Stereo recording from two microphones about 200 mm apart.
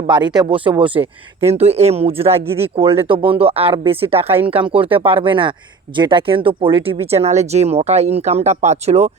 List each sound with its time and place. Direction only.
0.1 s speech: 20° right (ahead or behind)
4.3 s speech: 10° right (ahead or behind)
4.5 s speech: 25° right (ahead or behind)